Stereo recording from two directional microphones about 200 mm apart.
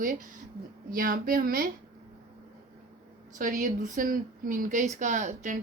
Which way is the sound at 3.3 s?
40° right (ahead or behind).